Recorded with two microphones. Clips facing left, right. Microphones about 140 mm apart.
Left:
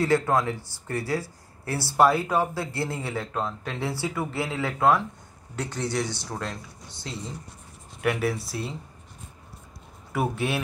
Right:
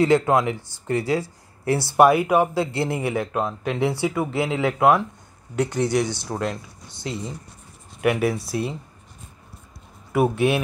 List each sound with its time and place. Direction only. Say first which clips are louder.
0.0 s speech: right 5 dB; 20° right (ahead or behind)
10.1 s speech: right 7 dB; 15° right (ahead or behind)